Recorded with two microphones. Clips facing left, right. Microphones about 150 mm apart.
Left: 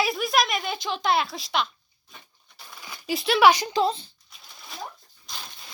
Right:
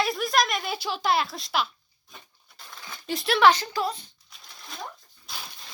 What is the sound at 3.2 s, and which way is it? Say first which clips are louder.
Speech: left 2 dB; centre (ahead or behind).